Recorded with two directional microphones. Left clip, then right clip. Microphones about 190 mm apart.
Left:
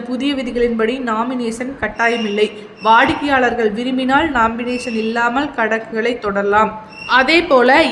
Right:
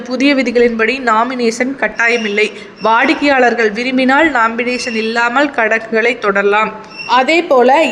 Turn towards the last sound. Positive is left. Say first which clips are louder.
# right 2 dB
turn(degrees=-10)  # may be behind; listen again after turning